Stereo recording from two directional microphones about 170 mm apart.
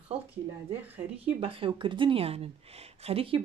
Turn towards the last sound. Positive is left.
turn(degrees=-35)  # may be behind; listen again after turning